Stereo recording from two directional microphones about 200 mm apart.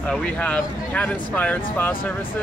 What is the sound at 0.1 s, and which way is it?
Speech, 5° left (ahead or behind).